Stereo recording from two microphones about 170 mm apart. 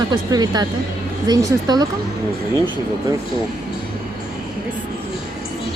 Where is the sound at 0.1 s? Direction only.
25° right (ahead or behind).